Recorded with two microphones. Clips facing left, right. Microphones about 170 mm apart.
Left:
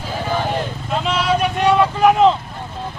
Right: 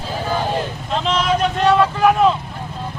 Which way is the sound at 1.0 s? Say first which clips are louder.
Right 1 dB; 10° left (ahead or behind).